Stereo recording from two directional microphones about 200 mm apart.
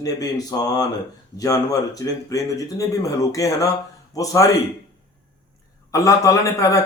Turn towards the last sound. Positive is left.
turn(degrees=15)  # may be behind; listen again after turning